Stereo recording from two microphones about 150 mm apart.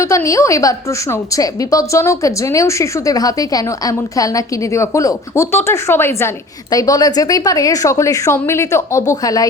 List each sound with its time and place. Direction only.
0.0 s a woman's voice: 20° left (ahead or behind)